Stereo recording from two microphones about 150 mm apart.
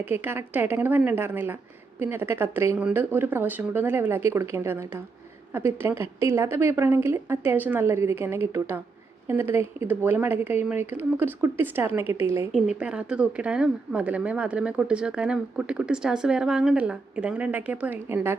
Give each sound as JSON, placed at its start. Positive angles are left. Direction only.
{"t": 0.0, "sound": "speech", "side_deg": -15}